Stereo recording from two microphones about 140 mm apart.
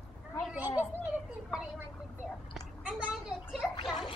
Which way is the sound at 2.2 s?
Centre (ahead or behind).